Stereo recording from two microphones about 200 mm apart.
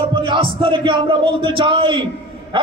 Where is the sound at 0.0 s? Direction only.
25° right (ahead or behind).